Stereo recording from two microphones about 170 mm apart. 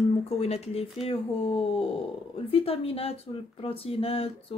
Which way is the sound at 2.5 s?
35° left (ahead or behind).